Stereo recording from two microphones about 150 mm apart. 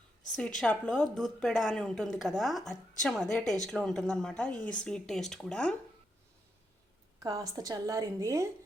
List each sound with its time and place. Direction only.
0.6 s a woman's voice: 5° left (ahead or behind)
7.2 s a woman's voice: 20° right (ahead or behind)